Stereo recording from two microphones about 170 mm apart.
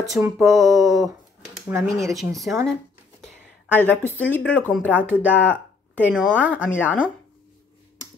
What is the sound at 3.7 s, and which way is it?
Speech, 10° left (ahead or behind).